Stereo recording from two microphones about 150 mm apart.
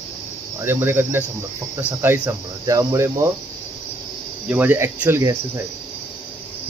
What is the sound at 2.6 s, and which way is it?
Speech, 20° right (ahead or behind).